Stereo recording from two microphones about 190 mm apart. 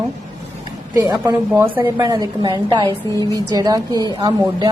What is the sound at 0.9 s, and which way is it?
A woman's voice, 20° right (ahead or behind).